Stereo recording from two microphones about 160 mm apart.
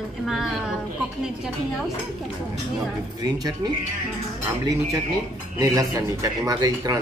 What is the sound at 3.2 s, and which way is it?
Speech, 25° right (ahead or behind).